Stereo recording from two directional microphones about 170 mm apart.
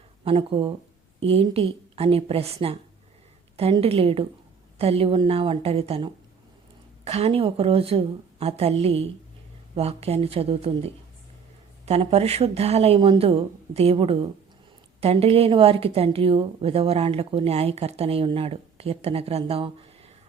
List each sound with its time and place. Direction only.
0.3 s a woman's voice: 30° right (ahead or behind)